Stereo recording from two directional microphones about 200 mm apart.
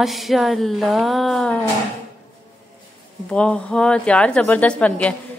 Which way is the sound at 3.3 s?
5° left (ahead or behind).